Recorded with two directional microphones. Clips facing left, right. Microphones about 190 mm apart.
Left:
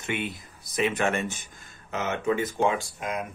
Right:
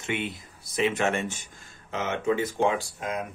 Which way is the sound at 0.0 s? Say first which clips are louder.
Even; 25° right (ahead or behind).